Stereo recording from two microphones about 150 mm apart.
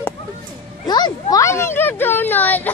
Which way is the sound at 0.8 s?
30° left (ahead or behind).